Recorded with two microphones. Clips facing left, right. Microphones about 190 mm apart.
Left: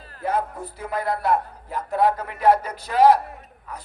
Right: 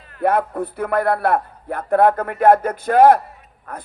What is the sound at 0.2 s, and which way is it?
A man's voice, 60° right (ahead or behind).